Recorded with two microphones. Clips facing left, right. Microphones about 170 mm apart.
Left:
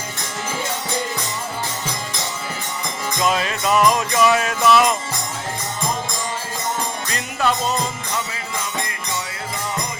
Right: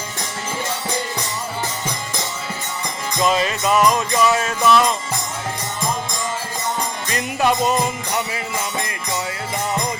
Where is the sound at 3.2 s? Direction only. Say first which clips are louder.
Right 2 dB; centre (ahead or behind).